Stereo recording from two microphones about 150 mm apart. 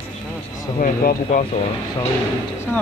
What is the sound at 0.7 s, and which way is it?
Speech, 70° left (ahead or behind).